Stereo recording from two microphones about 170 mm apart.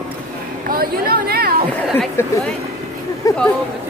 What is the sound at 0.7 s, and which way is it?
Speech, 60° right (ahead or behind).